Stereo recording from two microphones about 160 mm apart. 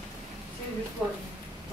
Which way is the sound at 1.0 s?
5° right (ahead or behind).